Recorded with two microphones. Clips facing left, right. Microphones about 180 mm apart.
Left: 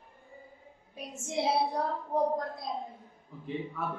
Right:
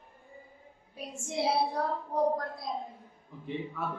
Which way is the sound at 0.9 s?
20° left (ahead or behind).